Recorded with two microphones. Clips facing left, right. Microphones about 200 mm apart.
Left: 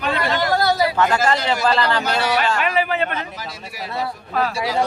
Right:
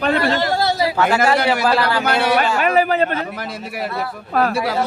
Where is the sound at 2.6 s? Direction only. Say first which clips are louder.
Right 5 dB; 45° right (ahead or behind).